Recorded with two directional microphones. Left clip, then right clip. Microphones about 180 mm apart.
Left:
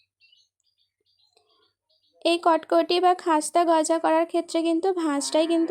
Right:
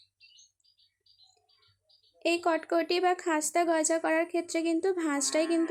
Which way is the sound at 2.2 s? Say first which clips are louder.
Left 7 dB; 30° left (ahead or behind).